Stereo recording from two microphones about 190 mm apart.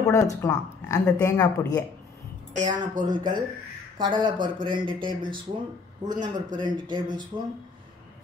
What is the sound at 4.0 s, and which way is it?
Speech, 25° right (ahead or behind).